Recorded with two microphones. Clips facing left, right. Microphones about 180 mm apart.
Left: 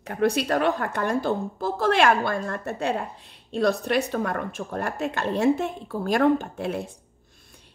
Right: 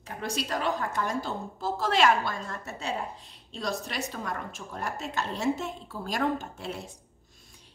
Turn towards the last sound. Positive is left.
turn(degrees=55)  # may be behind; listen again after turning